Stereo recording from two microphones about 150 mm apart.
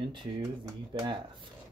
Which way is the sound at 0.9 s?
30° right (ahead or behind).